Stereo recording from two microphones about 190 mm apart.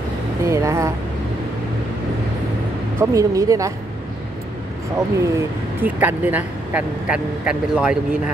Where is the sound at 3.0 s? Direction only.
15° right (ahead or behind).